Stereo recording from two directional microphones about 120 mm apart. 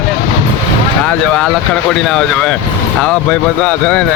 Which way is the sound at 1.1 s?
5° left (ahead or behind).